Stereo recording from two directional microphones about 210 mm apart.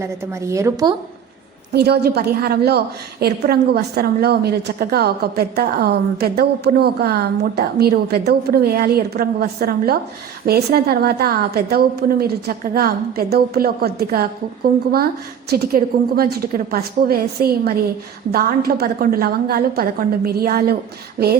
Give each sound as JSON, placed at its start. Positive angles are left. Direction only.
{"t": 0.0, "sound": "a woman's voice", "side_deg": -15}
{"t": 1.7, "sound": "a woman's voice", "side_deg": -50}